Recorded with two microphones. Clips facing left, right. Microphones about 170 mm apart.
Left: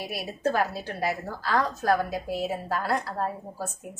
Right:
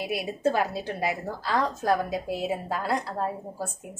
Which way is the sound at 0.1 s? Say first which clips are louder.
Right 2 dB; 20° right (ahead or behind).